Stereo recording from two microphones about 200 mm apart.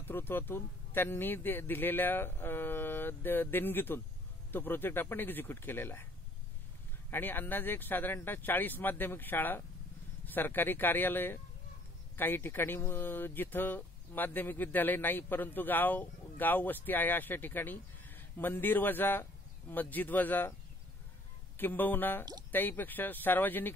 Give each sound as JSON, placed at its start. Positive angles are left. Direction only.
{"t": 0.0, "sound": "speech", "side_deg": 10}
{"t": 7.1, "sound": "speech", "side_deg": 10}
{"t": 21.5, "sound": "speech", "side_deg": 10}